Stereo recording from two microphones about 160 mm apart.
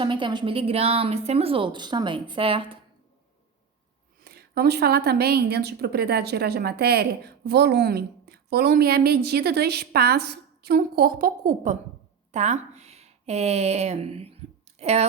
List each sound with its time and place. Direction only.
0.0 s a woman's voice: 30° right (ahead or behind)
4.2 s a woman's voice: 80° right; by 15.0 s 40° right (ahead or behind)